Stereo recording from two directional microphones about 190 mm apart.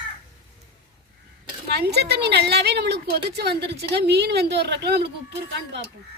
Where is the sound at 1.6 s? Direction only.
60° right (ahead or behind).